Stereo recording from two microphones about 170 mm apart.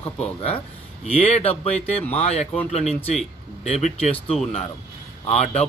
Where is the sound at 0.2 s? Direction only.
35° left (ahead or behind).